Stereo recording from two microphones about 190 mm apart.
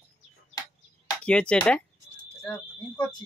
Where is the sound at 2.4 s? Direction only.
20° left (ahead or behind).